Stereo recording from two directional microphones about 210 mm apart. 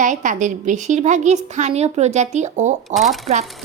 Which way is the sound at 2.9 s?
Centre (ahead or behind).